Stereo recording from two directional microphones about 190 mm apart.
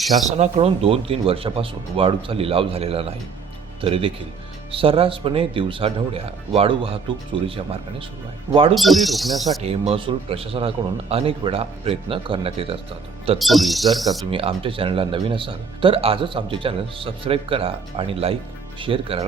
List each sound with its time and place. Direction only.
0.3 s speech: 35° right (ahead or behind)
8.7 s speech: centre (ahead or behind)
9.6 s speech: 30° right (ahead or behind)
13.4 s speech: centre (ahead or behind)
14.3 s speech: 30° right (ahead or behind)